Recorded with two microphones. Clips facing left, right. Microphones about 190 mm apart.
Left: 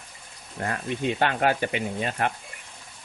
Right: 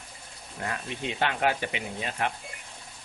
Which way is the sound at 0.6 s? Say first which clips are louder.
Left 6 dB; 40° left (ahead or behind).